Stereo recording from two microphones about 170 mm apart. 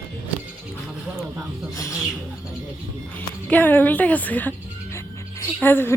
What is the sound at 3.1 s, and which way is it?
A woman's voice, 10° left (ahead or behind).